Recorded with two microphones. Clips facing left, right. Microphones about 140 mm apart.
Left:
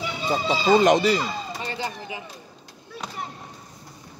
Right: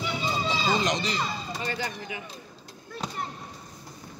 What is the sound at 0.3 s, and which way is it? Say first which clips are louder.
Speech: left 9 dB; 60° left (ahead or behind).